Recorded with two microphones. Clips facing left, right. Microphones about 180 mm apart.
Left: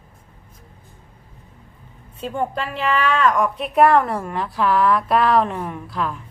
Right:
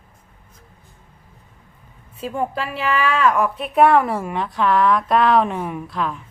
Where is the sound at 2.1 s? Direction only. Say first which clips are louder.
Even; 5° right (ahead or behind).